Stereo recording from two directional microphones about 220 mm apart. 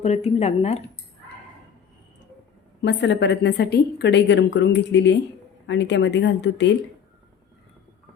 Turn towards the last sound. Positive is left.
turn(degrees=55)  # may be behind; listen again after turning